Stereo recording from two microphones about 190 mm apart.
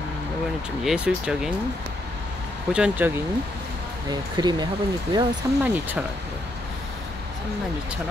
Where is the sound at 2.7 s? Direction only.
5° right (ahead or behind).